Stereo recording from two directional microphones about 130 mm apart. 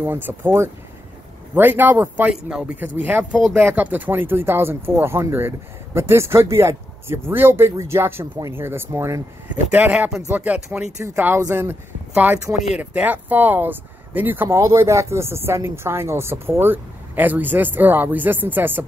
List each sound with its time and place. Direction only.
0.0 s speech: 15° right (ahead or behind)